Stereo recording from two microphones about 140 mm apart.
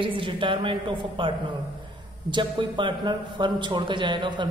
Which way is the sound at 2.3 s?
35° right (ahead or behind).